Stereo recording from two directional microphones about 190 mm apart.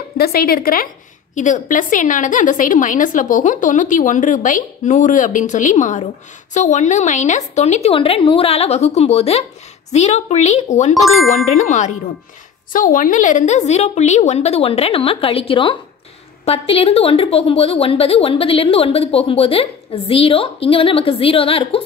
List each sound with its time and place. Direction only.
0.2 s a woman's voice: 55° left (ahead or behind); by 21.8 s 30° left (ahead or behind)